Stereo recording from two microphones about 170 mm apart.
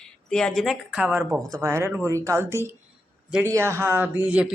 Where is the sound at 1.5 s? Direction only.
20° right (ahead or behind).